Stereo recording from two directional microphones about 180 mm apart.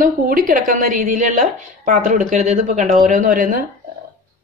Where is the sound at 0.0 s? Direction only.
50° right (ahead or behind).